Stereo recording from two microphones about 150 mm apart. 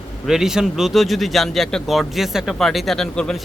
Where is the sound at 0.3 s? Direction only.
5° right (ahead or behind).